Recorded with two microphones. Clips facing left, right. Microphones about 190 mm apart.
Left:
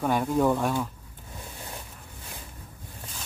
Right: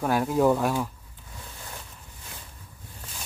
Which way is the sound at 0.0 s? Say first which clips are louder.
Right 1 dB; 5° right (ahead or behind).